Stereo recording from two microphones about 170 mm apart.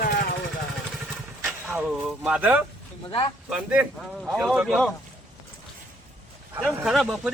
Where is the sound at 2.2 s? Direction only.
10° right (ahead or behind).